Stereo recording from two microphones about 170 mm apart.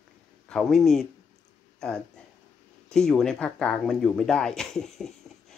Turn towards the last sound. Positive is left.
turn(degrees=5)  # may be behind; listen again after turning